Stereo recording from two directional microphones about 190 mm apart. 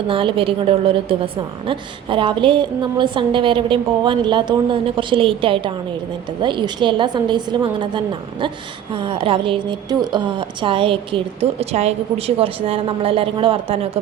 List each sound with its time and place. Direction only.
0.1 s a woman's voice: 25° right (ahead or behind)